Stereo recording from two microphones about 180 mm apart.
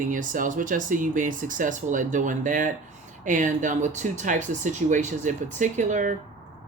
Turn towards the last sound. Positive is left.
turn(degrees=-45)  # may be behind; listen again after turning